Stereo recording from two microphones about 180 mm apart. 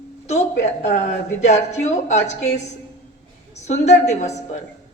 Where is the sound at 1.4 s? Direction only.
40° left (ahead or behind).